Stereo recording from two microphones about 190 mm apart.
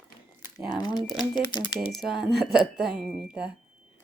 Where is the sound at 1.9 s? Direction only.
Centre (ahead or behind).